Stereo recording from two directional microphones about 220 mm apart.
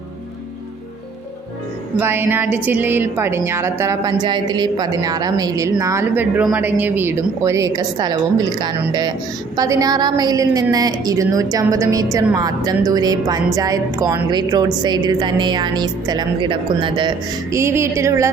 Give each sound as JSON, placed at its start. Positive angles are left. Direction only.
{"t": 2.0, "sound": "a woman's voice", "side_deg": -10}